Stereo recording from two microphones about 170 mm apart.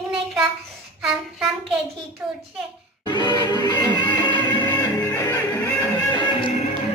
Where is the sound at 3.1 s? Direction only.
25° left (ahead or behind).